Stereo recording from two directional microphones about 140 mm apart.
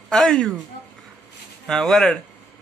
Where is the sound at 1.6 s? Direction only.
5° left (ahead or behind).